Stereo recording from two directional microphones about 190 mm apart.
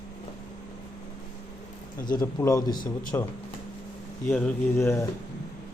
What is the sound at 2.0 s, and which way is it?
Speech, 45° left (ahead or behind).